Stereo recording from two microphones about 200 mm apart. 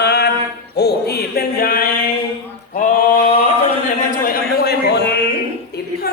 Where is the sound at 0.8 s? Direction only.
55° left (ahead or behind).